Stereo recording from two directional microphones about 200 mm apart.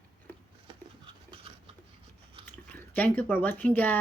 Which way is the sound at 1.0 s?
25° right (ahead or behind).